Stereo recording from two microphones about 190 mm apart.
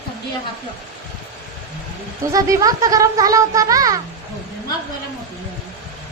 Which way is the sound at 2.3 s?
15° right (ahead or behind).